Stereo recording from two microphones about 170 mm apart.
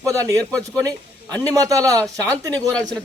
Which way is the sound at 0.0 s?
20° right (ahead or behind).